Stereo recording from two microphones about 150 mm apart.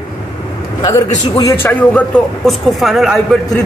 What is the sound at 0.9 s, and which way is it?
A man's voice, 20° left (ahead or behind).